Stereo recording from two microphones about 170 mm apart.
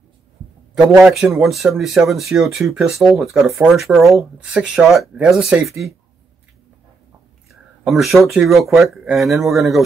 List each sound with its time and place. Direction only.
0.7 s a man's voice: 20° right (ahead or behind)
1.0 s speech: centre (ahead or behind)
7.8 s speech: centre (ahead or behind)